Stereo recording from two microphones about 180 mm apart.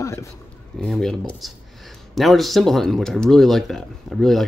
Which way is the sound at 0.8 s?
Centre (ahead or behind).